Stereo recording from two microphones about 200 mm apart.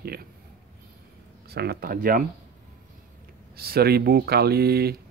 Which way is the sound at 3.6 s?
50° right (ahead or behind).